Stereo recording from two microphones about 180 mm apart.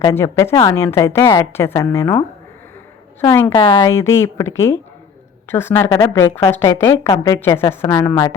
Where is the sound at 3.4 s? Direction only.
20° left (ahead or behind).